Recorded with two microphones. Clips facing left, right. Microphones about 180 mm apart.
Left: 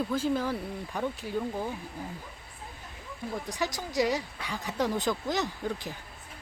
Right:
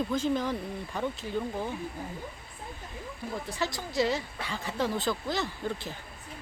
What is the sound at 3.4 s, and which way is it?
Speech, 15° left (ahead or behind).